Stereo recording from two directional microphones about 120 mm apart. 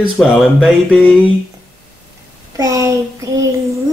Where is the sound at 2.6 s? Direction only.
30° right (ahead or behind).